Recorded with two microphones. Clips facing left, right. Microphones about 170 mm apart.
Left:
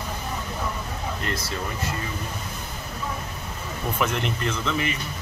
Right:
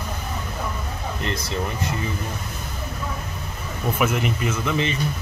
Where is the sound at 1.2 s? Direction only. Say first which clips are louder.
Right 6 dB; 20° right (ahead or behind).